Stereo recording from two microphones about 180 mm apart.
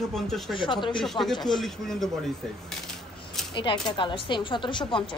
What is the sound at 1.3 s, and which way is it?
Speech, 25° left (ahead or behind).